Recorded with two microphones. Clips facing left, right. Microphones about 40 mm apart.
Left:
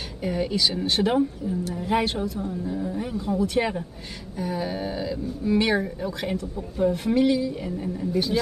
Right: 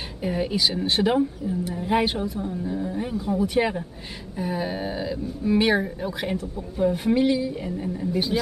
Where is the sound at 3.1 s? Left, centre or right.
Centre.